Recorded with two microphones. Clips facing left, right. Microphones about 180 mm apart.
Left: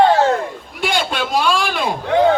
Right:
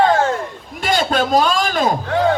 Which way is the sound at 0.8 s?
40° right (ahead or behind).